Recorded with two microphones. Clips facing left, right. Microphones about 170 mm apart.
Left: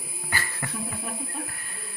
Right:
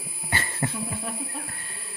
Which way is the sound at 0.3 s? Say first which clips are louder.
Right 4 dB; 25° right (ahead or behind).